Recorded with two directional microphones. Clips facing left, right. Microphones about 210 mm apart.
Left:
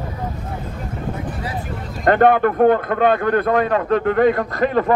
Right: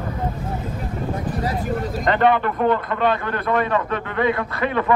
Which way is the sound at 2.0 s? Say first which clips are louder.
Left 5 dB; 50° left (ahead or behind).